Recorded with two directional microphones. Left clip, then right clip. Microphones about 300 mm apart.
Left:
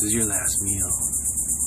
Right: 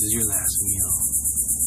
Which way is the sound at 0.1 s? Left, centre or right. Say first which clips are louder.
Left 2 dB; left.